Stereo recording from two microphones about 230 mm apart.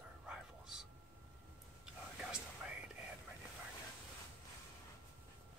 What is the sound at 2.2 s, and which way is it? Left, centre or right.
Whispering, centre.